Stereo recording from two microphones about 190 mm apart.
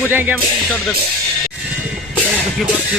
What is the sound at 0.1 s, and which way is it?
Speech, 10° right (ahead or behind).